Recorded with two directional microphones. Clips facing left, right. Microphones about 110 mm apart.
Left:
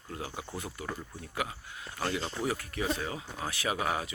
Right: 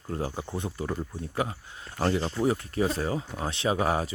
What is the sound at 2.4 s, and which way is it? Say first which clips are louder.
Speech: right 6 dB; 25° right (ahead or behind).